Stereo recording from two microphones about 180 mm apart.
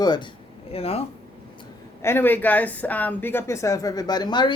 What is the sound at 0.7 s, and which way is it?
Speech, 35° left (ahead or behind).